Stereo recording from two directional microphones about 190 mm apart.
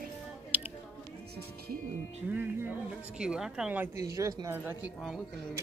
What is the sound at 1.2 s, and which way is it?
Music, 55° right (ahead or behind).